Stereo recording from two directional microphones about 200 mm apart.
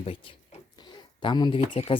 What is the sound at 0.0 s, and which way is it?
Speech, 25° left (ahead or behind).